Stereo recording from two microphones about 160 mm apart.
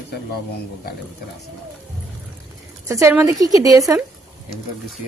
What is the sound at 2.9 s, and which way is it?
Speech, 20° right (ahead or behind).